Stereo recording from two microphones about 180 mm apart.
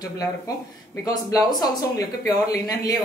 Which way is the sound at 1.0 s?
20° left (ahead or behind).